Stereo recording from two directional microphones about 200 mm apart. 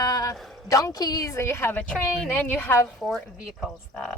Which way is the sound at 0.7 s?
15° left (ahead or behind).